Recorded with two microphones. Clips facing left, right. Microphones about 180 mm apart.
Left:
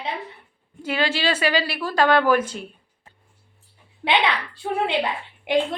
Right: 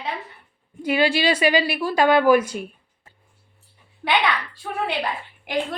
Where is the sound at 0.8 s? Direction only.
15° right (ahead or behind).